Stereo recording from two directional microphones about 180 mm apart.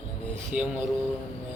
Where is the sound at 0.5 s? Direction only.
10° right (ahead or behind).